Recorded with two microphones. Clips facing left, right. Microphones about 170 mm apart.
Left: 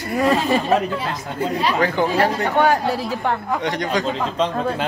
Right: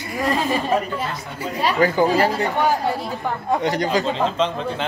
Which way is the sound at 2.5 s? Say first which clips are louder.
Left 3 dB; 70° left (ahead or behind).